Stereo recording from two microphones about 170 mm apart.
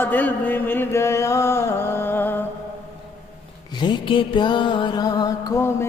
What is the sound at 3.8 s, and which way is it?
Mantra, 30° left (ahead or behind).